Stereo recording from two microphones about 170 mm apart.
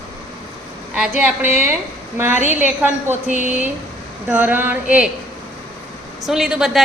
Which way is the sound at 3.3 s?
45° left (ahead or behind).